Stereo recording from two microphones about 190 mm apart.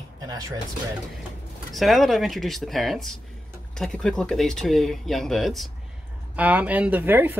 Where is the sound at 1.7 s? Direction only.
Centre (ahead or behind).